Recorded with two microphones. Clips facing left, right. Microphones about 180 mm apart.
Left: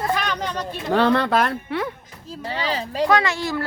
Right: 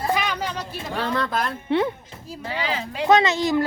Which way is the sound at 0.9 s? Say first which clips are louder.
Left 7 dB; 70° left (ahead or behind).